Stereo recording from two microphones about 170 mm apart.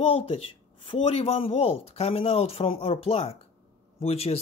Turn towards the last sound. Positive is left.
turn(degrees=35)  # may be behind; listen again after turning